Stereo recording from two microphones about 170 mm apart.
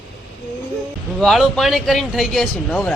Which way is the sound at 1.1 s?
Centre (ahead or behind).